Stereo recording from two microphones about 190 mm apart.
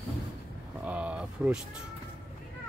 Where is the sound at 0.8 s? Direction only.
5° right (ahead or behind).